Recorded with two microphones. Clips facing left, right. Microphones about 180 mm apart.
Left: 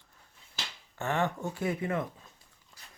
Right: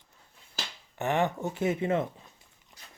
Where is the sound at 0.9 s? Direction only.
20° right (ahead or behind).